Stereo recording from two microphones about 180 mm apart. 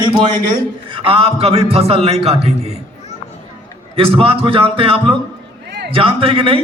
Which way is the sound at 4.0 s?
30° right (ahead or behind).